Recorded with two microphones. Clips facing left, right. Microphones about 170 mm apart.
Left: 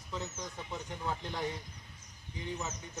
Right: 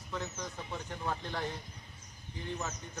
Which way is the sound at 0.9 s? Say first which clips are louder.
Right 1 dB; 15° left (ahead or behind).